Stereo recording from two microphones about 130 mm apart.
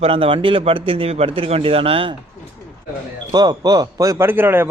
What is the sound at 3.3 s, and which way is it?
Speech, 30° right (ahead or behind).